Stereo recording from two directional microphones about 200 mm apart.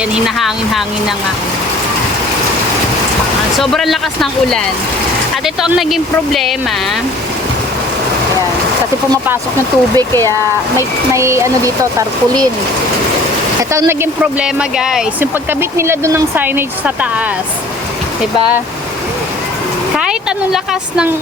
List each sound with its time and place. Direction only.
0.1 s speech: centre (ahead or behind)
3.6 s speech: centre (ahead or behind)
5.9 s speech: centre (ahead or behind)
9.2 s speech: 10° right (ahead or behind)
10.1 s speech: 10° left (ahead or behind)
11.1 s speech: 15° right (ahead or behind)
13.7 s speech: 10° right (ahead or behind)
15.8 s speech: 15° right (ahead or behind)
20.0 s speech: 5° right (ahead or behind)